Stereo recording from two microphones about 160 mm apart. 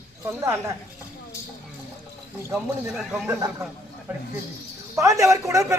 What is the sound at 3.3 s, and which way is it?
Speech, 15° right (ahead or behind).